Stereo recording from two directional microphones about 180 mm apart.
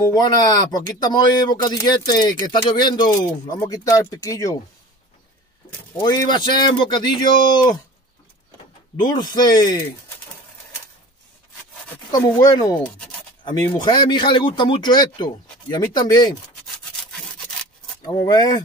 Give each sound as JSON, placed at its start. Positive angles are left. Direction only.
{"t": 0.0, "sound": "speech", "side_deg": 20}
{"t": 5.9, "sound": "speech", "side_deg": 25}
{"t": 9.0, "sound": "speech", "side_deg": 25}
{"t": 12.1, "sound": "speech", "side_deg": 20}
{"t": 18.0, "sound": "speech", "side_deg": 25}